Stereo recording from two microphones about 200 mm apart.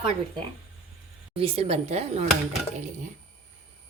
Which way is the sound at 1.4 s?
30° right (ahead or behind).